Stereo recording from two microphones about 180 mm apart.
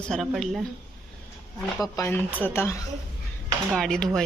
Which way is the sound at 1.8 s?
15° left (ahead or behind).